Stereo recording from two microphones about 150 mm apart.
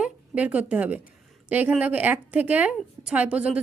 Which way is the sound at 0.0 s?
10° right (ahead or behind).